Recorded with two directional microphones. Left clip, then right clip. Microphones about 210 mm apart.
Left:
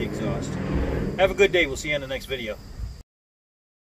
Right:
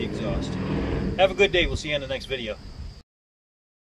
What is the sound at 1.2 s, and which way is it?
Speech, 20° left (ahead or behind).